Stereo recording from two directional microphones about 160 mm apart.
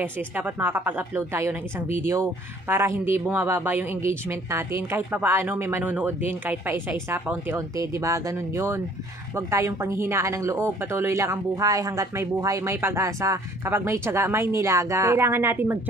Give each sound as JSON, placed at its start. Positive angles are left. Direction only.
{"t": 0.0, "sound": "speech", "side_deg": -10}